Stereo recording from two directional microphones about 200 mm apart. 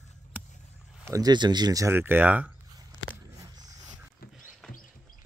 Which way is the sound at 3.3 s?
20° right (ahead or behind).